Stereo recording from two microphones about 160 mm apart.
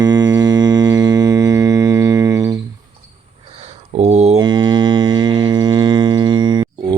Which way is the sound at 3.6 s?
45° right (ahead or behind).